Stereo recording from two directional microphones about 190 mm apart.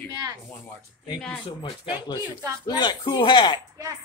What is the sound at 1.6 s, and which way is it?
Speech, 25° left (ahead or behind).